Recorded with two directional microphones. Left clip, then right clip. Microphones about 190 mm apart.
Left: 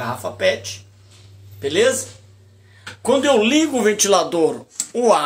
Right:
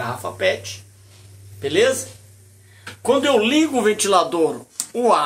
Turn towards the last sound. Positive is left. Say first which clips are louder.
# left 1 dB
turn(degrees=15)  # may be behind; listen again after turning